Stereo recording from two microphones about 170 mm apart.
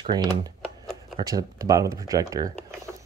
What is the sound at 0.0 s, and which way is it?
Speech, 25° right (ahead or behind).